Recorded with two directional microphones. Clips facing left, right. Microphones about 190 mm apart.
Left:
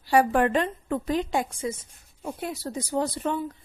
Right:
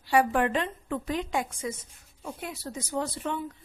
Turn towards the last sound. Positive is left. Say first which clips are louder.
# left 4 dB
turn(degrees=35)  # may be behind; listen again after turning